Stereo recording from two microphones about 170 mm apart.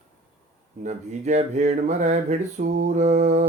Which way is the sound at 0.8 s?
45° right (ahead or behind).